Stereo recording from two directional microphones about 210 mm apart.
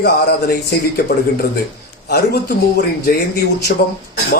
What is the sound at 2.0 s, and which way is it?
A man's voice, 50° left (ahead or behind).